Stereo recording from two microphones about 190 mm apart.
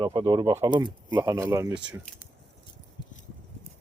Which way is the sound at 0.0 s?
25° right (ahead or behind).